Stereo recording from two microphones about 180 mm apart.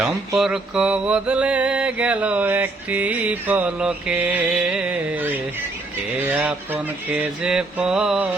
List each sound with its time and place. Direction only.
0.3 s mantra: 5° right (ahead or behind)